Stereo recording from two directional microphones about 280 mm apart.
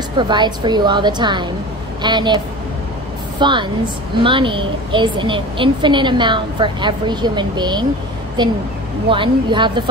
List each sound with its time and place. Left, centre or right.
0.2 s a woman's voice: centre